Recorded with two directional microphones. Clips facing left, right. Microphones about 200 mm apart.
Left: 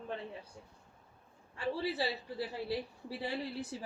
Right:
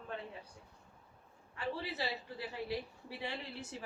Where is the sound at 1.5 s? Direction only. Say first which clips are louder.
Left 5 dB; 35° left (ahead or behind).